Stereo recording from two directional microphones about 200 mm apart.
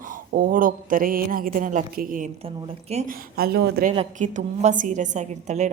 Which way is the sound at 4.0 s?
40° right (ahead or behind).